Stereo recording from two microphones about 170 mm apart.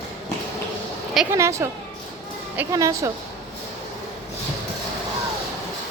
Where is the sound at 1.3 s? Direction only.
15° right (ahead or behind).